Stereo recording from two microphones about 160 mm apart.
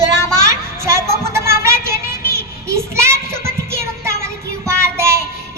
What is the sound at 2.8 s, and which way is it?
Child singing, 15° right (ahead or behind).